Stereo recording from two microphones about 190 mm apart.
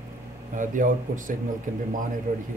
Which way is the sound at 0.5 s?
45° right (ahead or behind).